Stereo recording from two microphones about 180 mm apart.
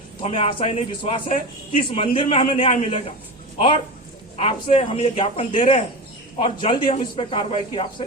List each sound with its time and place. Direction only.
0.2 s speech: 35° left (ahead or behind)
4.4 s speech: 30° left (ahead or behind)